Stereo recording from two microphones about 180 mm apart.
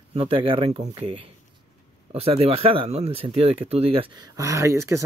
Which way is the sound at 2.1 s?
35° right (ahead or behind).